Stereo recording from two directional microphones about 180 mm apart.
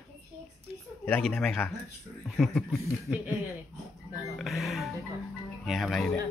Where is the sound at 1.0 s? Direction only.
5° left (ahead or behind).